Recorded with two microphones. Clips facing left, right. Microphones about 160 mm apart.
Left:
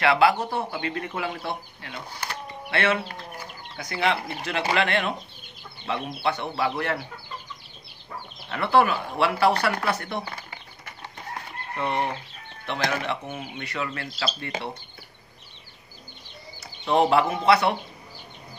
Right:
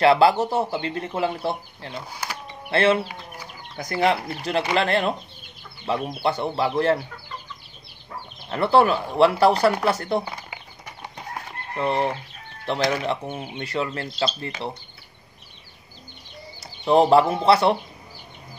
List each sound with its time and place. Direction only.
0.0 s speech: 30° right (ahead or behind)
3.7 s speech: 40° right (ahead or behind)
8.5 s speech: 30° right (ahead or behind)
10.2 s bird: 10° right (ahead or behind)
12.6 s speech: 35° right (ahead or behind)
16.8 s speech: 35° right (ahead or behind)